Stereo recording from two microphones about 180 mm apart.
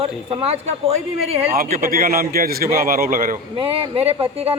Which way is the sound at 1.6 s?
50° right (ahead or behind).